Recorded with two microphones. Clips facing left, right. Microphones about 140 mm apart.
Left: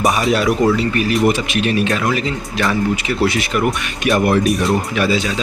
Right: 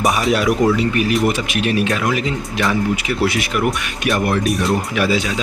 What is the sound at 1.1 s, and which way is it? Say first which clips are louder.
Speech: left 2 dB; centre (ahead or behind).